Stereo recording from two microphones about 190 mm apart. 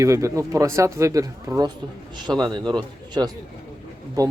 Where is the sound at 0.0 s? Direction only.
15° right (ahead or behind).